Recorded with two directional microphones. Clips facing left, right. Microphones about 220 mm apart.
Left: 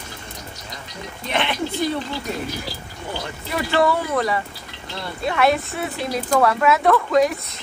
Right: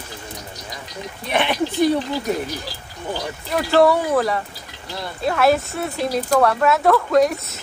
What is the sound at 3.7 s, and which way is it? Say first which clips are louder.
Speech: right 5 dB; centre (ahead or behind).